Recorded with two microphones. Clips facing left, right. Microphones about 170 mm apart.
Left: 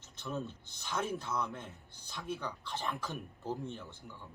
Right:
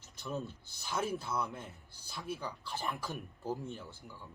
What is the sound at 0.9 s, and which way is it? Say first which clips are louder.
Speech: even; 10° right (ahead or behind).